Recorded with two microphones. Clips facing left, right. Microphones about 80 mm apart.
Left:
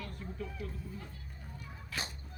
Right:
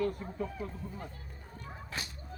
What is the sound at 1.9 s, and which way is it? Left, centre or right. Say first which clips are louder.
Neigh: left 1 dB; right.